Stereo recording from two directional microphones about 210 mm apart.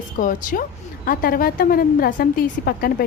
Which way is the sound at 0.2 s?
40° left (ahead or behind).